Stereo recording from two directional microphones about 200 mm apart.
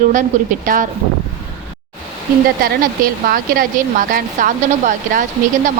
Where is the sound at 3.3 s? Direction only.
45° right (ahead or behind).